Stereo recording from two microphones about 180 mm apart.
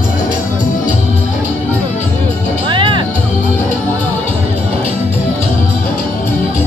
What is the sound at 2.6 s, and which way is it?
Music, 25° right (ahead or behind).